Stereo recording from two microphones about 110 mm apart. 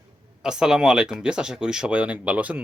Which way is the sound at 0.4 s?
5° right (ahead or behind).